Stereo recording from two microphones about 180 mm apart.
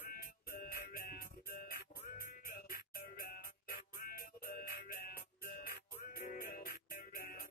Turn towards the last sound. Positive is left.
turn(degrees=55)  # may be behind; listen again after turning